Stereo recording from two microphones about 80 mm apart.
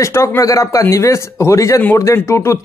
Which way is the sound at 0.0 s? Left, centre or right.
Left.